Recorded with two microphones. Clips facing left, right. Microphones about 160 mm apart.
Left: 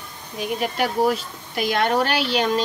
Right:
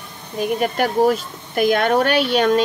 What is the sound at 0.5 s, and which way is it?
Speech, 45° right (ahead or behind).